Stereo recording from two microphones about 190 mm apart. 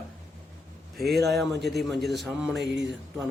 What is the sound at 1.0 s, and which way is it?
Speech, 55° right (ahead or behind).